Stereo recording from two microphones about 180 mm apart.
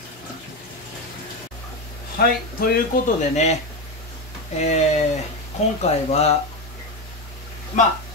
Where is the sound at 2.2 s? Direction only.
55° left (ahead or behind); by 3.6 s 40° left (ahead or behind).